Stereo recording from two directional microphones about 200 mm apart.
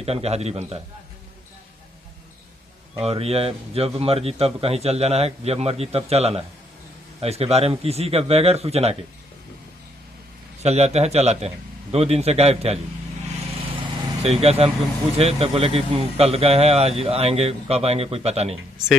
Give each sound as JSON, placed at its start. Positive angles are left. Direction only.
{"t": 0.0, "sound": "a man's voice", "side_deg": -30}
{"t": 3.1, "sound": "a man's voice", "side_deg": -30}
{"t": 10.6, "sound": "a man's voice", "side_deg": -35}
{"t": 13.7, "sound": "vehicle", "side_deg": -30}
{"t": 15.1, "sound": "a man's voice", "side_deg": -30}